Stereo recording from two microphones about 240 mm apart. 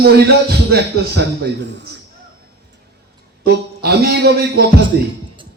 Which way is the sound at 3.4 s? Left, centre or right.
Right.